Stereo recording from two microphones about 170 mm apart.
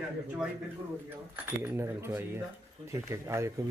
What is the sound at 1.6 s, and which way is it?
Speech, 15° right (ahead or behind).